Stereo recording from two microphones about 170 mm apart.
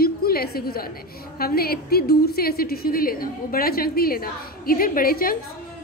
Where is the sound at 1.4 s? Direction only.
65° left (ahead or behind).